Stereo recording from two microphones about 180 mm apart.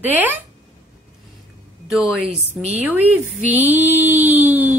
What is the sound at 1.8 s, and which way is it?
Speech, centre (ahead or behind).